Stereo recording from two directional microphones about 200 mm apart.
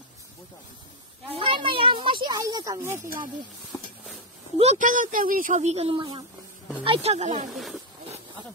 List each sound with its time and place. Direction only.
1.3 s a sound: 25° right (ahead or behind)
4.6 s speech: 35° right (ahead or behind)
7.5 s speech: centre (ahead or behind)